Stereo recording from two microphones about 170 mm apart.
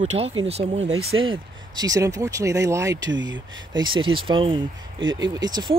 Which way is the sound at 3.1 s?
90° right.